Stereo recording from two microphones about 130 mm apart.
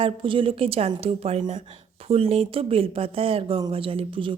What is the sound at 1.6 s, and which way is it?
A woman's voice, 50° right (ahead or behind).